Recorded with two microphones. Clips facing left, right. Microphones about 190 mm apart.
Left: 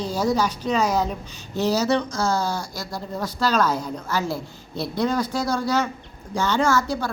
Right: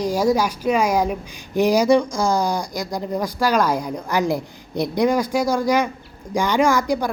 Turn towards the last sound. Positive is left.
turn(degrees=-15)  # may be behind; listen again after turning